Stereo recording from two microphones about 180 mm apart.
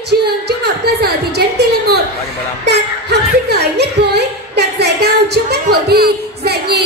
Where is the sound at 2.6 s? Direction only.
65° right (ahead or behind).